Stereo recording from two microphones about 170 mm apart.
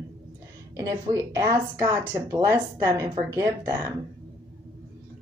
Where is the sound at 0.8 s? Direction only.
20° right (ahead or behind).